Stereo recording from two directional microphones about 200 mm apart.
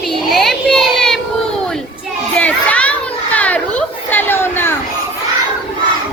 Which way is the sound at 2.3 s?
5° left (ahead or behind).